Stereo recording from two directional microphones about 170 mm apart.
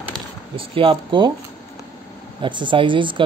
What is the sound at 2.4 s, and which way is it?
Speech, 30° right (ahead or behind).